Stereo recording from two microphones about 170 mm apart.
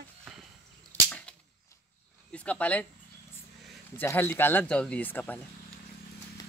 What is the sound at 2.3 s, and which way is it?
Speech, 10° left (ahead or behind).